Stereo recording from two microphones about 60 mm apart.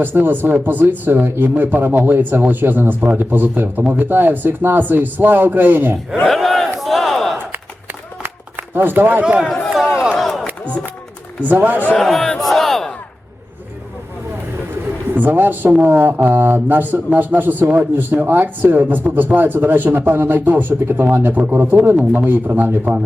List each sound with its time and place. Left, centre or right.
0.0 s a man's voice: right
6.2 s battle cry: centre
8.2 s a sound: right
9.2 s speech: centre
10.2 s crowd: centre
11.4 s a man's voice: right
11.9 s battle cry: centre
15.1 s a man's voice: right